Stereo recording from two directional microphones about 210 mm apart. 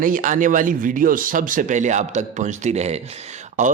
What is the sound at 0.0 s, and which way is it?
Speech, 40° right (ahead or behind).